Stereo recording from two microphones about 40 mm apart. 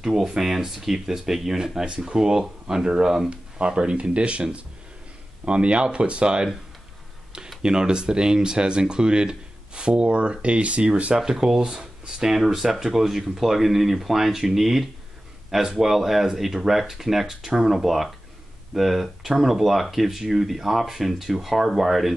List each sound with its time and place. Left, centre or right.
0.0 s speech: centre
1.9 s speech: right
7.6 s speech: centre
11.1 s speech: centre